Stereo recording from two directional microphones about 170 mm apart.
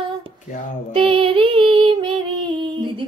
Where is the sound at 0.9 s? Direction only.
30° right (ahead or behind).